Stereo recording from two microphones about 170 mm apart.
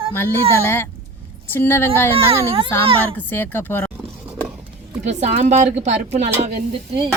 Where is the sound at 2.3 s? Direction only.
35° right (ahead or behind).